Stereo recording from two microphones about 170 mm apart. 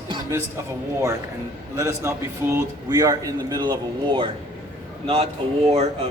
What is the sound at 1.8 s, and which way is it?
A man's voice, 15° right (ahead or behind).